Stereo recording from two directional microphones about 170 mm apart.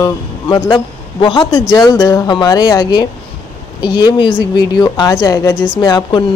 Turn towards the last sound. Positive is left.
turn(degrees=25)  # may be behind; listen again after turning